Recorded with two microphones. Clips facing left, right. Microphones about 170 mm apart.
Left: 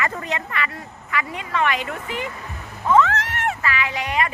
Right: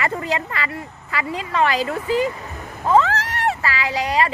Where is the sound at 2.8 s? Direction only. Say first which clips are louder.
Right 1 dB; 35° right (ahead or behind).